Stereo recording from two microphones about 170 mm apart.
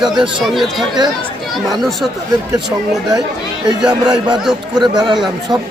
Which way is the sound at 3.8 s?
25° right (ahead or behind).